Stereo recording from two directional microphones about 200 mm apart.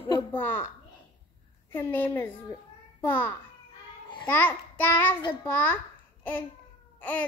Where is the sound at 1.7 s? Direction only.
10° left (ahead or behind).